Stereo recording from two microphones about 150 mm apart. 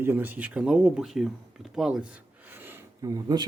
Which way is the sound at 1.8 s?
5° right (ahead or behind).